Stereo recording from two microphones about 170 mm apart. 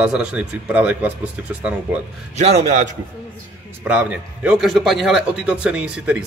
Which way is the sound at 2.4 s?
40° right (ahead or behind).